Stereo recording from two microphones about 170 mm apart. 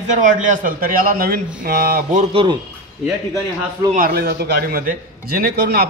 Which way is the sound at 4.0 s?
60° right (ahead or behind).